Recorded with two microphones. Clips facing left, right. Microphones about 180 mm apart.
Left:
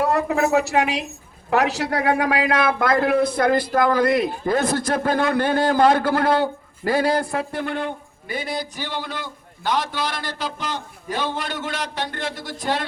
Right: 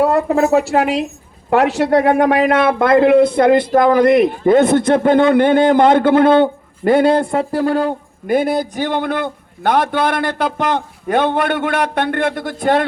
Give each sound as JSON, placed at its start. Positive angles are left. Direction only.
{"t": 0.0, "sound": "a man's voice", "side_deg": -30}
{"t": 8.4, "sound": "a man's voice", "side_deg": -55}